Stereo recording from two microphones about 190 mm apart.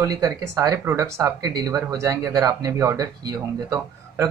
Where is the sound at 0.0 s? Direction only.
20° right (ahead or behind).